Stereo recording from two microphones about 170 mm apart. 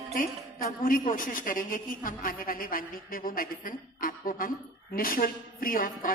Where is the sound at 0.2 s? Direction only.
55° left (ahead or behind).